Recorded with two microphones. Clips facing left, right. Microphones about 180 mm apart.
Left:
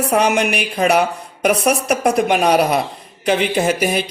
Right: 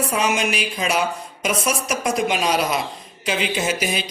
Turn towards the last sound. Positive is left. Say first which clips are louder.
# left 6 dB
turn(degrees=55)  # may be behind; listen again after turning